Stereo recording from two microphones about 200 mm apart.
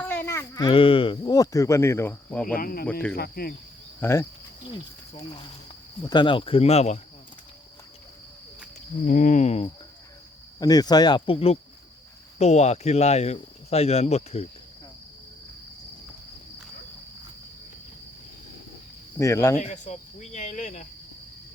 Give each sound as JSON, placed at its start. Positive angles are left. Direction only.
{"t": 0.0, "sound": "speech", "side_deg": 10}
{"t": 2.6, "sound": "cricket", "side_deg": 45}
{"t": 4.0, "sound": "speech", "side_deg": 15}
{"t": 6.0, "sound": "speech", "side_deg": 20}
{"t": 9.0, "sound": "speech", "side_deg": 40}
{"t": 10.6, "sound": "speech", "side_deg": 20}
{"t": 19.2, "sound": "speech", "side_deg": 15}
{"t": 19.5, "sound": "speech", "side_deg": 35}